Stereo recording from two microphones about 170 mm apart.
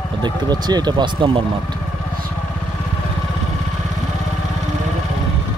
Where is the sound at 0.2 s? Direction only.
25° right (ahead or behind).